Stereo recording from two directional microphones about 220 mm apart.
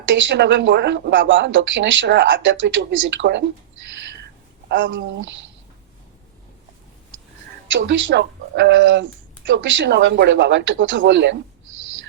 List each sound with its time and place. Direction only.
0.1 s speech: 55° right (ahead or behind)
4.7 s speech: 55° right (ahead or behind)
7.7 s speech: 55° right (ahead or behind)